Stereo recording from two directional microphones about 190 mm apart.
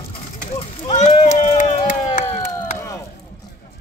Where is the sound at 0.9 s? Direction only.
35° left (ahead or behind).